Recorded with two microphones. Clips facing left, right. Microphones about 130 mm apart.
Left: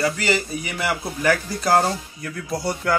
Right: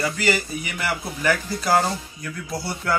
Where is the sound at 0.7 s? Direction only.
5° left (ahead or behind).